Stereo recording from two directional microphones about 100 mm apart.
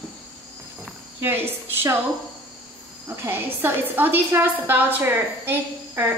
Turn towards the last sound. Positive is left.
turn(degrees=-20)  # may be behind; listen again after turning